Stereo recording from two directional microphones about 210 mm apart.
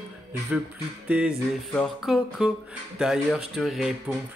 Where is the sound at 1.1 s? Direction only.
5° right (ahead or behind).